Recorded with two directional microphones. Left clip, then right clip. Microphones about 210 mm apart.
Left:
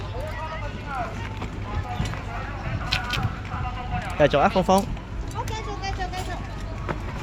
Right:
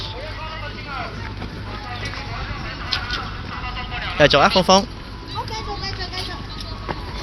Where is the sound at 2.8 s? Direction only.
45° left (ahead or behind).